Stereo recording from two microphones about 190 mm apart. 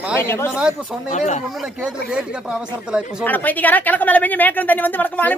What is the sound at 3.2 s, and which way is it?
Speech, 10° left (ahead or behind).